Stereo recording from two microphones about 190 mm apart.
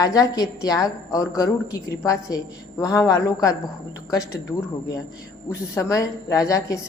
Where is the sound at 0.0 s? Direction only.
20° left (ahead or behind).